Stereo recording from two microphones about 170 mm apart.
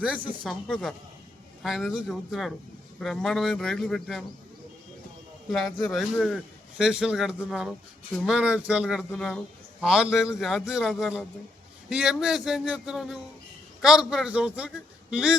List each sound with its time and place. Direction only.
0.2 s speech: 30° right (ahead or behind)
0.4 s a man's voice: centre (ahead or behind)
5.5 s a man's voice: centre (ahead or behind)